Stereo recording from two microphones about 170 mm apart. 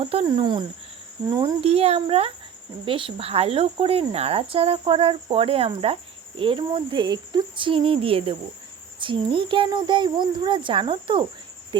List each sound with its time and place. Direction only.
0.0 s speech: 35° right (ahead or behind)
1.6 s speech: 35° right (ahead or behind)
11.7 s cricket: 25° right (ahead or behind)